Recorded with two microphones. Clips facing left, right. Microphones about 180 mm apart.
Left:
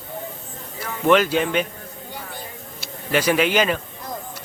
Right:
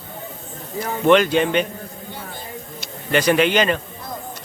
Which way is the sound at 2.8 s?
5° left (ahead or behind).